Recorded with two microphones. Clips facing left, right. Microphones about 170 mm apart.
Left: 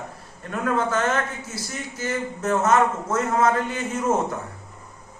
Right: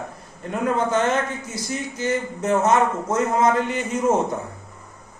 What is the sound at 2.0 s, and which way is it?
A man's voice, 15° right (ahead or behind).